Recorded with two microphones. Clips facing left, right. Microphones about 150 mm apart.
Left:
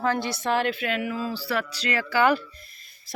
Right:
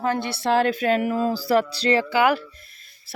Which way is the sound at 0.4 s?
40° right (ahead or behind).